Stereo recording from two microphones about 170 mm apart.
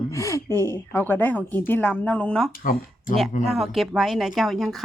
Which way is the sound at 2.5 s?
55° left (ahead or behind).